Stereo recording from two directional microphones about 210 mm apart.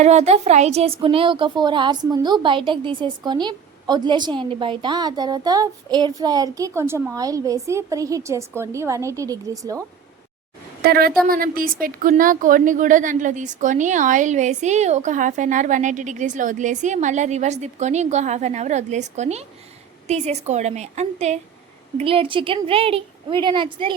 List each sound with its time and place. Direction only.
0.0 s speech: 30° right (ahead or behind); by 9.8 s 15° right (ahead or behind)
10.8 s a woman's voice: 45° right (ahead or behind); by 23.9 s 25° right (ahead or behind)